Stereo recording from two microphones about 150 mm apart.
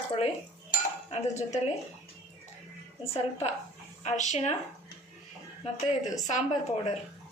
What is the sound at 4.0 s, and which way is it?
Speech, 50° left (ahead or behind).